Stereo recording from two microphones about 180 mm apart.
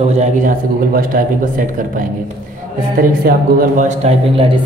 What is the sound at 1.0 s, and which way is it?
Speech, 50° right (ahead or behind).